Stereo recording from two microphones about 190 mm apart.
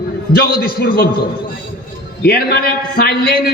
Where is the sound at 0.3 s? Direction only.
55° left (ahead or behind).